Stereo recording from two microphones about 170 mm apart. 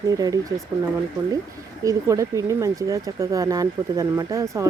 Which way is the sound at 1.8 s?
20° right (ahead or behind).